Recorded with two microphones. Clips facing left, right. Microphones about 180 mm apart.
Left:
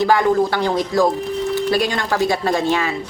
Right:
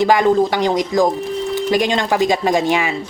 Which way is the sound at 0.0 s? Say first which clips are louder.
Right 2 dB; 15° right (ahead or behind).